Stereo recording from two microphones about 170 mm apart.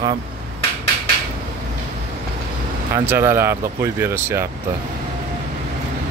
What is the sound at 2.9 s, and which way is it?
Speech, 15° right (ahead or behind).